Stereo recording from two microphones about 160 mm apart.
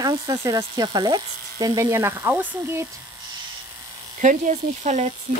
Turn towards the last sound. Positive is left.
turn(degrees=-45)  # may be behind; listen again after turning